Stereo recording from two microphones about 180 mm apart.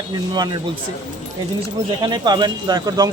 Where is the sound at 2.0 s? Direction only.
25° right (ahead or behind).